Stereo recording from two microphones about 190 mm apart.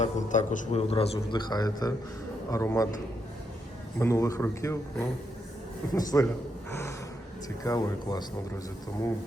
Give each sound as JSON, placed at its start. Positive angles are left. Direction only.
{"t": 0.0, "sound": "a man's voice", "side_deg": 40}
{"t": 3.9, "sound": "a man's voice", "side_deg": 15}
{"t": 6.7, "sound": "snort", "side_deg": 15}
{"t": 7.6, "sound": "speech", "side_deg": 20}